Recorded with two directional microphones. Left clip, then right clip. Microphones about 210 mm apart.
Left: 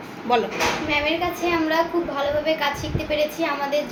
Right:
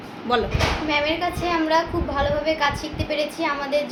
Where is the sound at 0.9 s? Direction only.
15° right (ahead or behind).